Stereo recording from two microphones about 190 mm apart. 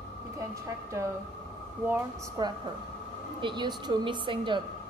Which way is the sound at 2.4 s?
20° right (ahead or behind).